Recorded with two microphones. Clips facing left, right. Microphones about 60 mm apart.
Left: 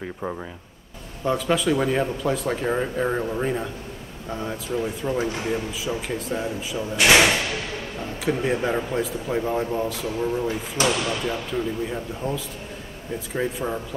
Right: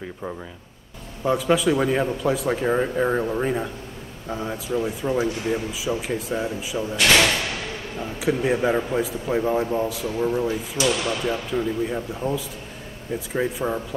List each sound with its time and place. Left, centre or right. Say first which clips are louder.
0.0 s speech: left 2 dB; centre
1.2 s speech: right 2 dB; centre
7.0 s speech: left 2 dB; centre
8.0 s speech: right 2 dB; centre
10.8 s speech: even; left
11.2 s speech: right 2 dB; centre